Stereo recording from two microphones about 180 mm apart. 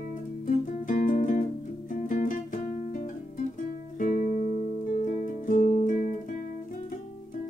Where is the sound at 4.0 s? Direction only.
45° left (ahead or behind).